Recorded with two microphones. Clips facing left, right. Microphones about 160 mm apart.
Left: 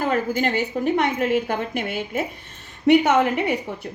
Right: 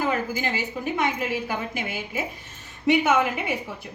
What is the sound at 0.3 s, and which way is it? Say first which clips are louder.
Speech: left 6 dB; 60° left (ahead or behind).